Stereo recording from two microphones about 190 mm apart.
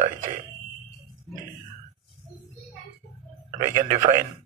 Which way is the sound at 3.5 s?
45° right (ahead or behind).